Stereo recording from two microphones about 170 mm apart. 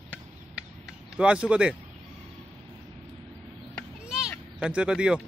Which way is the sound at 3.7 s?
5° right (ahead or behind).